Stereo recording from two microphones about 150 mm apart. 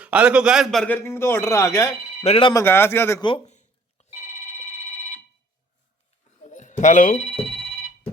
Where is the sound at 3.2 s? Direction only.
35° left (ahead or behind).